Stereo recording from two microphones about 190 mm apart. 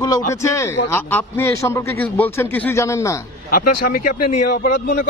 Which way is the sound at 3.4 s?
50° left (ahead or behind).